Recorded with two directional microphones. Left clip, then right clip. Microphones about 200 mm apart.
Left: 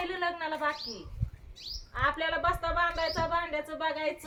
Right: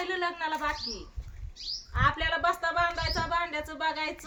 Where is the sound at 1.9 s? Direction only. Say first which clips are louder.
Right 2 dB; 60° right (ahead or behind).